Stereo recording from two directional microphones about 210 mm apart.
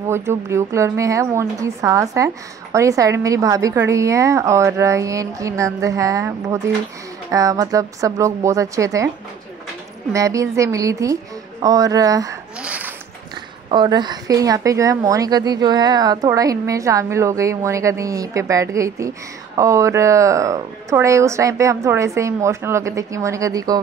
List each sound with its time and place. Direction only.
0.1 s a woman's voice: 10° right (ahead or behind)
10.1 s a woman's voice: 15° right (ahead or behind)
12.6 s a sound: 5° right (ahead or behind)
13.7 s a woman's voice: 20° right (ahead or behind)